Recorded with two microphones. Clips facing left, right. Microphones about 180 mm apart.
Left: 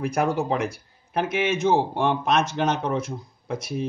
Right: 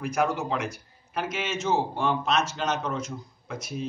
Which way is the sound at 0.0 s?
60° left (ahead or behind).